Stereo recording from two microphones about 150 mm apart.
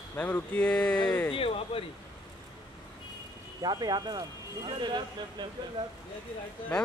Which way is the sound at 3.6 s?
25° right (ahead or behind).